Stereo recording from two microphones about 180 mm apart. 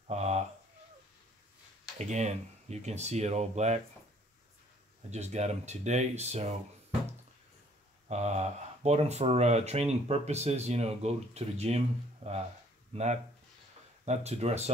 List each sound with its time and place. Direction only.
0.1 s a sound: 35° right (ahead or behind)
2.0 s speech: 40° right (ahead or behind)
5.1 s speech: 40° right (ahead or behind)
8.1 s speech: 40° right (ahead or behind)